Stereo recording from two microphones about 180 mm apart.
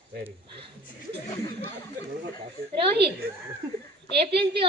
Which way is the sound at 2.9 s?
65° right (ahead or behind).